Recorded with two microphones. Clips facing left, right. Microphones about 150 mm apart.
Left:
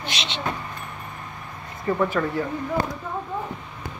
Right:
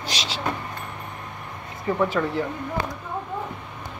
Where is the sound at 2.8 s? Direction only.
45° left (ahead or behind).